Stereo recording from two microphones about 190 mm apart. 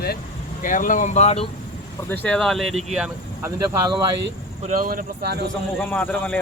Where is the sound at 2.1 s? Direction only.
5° left (ahead or behind).